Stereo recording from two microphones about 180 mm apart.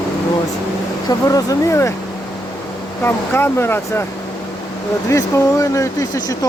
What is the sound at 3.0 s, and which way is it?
Speech, 10° left (ahead or behind).